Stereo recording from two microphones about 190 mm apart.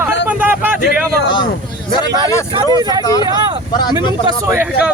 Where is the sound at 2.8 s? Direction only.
20° right (ahead or behind).